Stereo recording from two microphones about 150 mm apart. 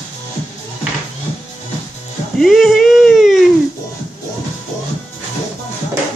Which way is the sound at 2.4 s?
Centre (ahead or behind).